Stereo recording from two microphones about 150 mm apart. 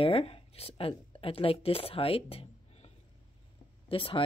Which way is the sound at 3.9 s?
35° left (ahead or behind).